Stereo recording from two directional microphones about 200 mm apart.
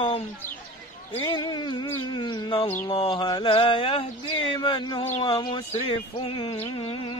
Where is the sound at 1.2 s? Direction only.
20° left (ahead or behind).